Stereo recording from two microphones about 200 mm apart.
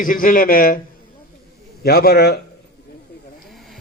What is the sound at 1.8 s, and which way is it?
Speech, 50° left (ahead or behind).